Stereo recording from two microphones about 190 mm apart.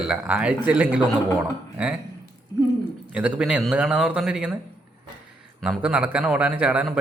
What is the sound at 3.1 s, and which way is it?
A man's voice, 5° right (ahead or behind).